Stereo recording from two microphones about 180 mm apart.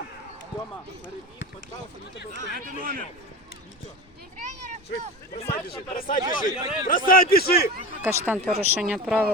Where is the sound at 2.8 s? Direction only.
50° right (ahead or behind).